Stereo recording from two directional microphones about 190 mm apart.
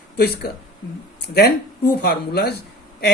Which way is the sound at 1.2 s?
60° left (ahead or behind).